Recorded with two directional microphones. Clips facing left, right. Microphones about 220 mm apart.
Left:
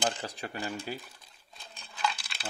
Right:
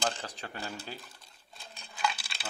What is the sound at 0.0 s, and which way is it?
Speech, 15° left (ahead or behind).